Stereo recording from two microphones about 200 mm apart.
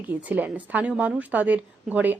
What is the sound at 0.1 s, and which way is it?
A woman's voice, 10° right (ahead or behind).